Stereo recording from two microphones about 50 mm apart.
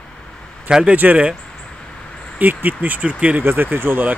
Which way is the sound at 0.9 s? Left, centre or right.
Right.